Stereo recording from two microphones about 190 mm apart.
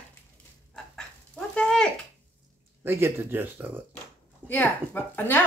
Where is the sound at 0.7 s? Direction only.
5° left (ahead or behind).